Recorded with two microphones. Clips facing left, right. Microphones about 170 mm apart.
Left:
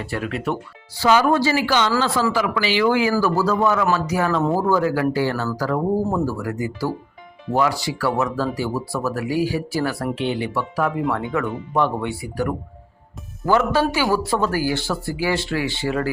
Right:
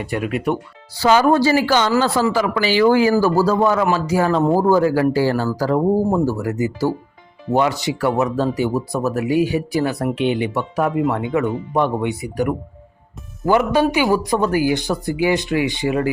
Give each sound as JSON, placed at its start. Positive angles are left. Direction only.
{"t": 0.0, "sound": "speech", "side_deg": -15}
{"t": 1.0, "sound": "speech", "side_deg": -40}